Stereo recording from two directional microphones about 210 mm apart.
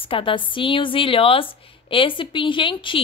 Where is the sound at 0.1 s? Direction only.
25° left (ahead or behind).